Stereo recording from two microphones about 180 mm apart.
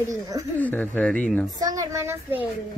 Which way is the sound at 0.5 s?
10° left (ahead or behind).